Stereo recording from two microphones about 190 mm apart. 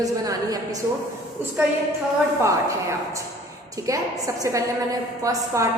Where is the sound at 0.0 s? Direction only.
20° right (ahead or behind).